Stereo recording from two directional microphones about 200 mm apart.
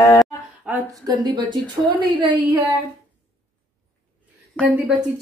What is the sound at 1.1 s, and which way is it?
Speech, 20° right (ahead or behind).